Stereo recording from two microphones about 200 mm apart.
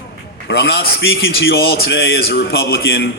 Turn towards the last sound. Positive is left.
turn(degrees=55)  # may be behind; listen again after turning